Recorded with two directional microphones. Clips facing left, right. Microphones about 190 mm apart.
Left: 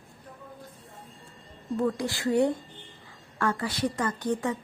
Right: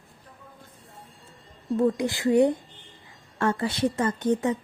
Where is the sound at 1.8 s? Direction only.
20° right (ahead or behind).